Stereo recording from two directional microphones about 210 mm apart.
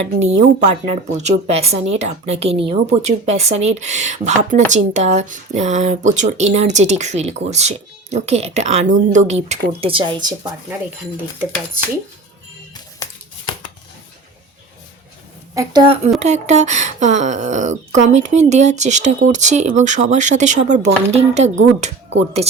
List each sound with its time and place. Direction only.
0.2 s speech: 30° right (ahead or behind)
13.0 s a sound: 20° left (ahead or behind)
15.5 s a woman's voice: 20° right (ahead or behind)
16.2 s speech: 35° right (ahead or behind)